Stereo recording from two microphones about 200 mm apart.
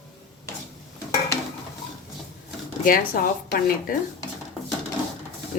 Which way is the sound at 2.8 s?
45° left (ahead or behind).